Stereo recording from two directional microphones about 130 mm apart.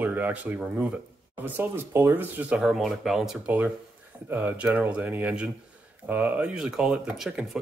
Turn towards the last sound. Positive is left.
turn(degrees=-5)  # may be behind; listen again after turning